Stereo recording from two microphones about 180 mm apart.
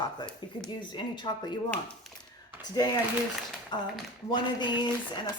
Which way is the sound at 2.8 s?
20° left (ahead or behind).